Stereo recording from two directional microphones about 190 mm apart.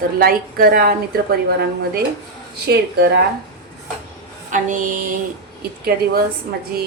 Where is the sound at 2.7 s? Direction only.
60° right (ahead or behind).